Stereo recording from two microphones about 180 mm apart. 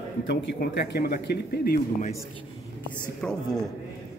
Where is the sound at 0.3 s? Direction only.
70° left (ahead or behind).